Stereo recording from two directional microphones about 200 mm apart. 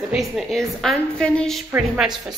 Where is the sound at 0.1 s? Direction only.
Centre (ahead or behind).